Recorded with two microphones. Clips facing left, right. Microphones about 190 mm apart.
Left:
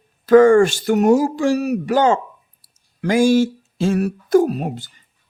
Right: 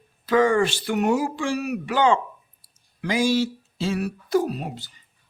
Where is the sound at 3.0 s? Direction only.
50° left (ahead or behind).